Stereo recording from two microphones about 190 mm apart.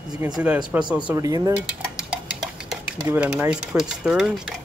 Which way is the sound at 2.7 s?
5° right (ahead or behind).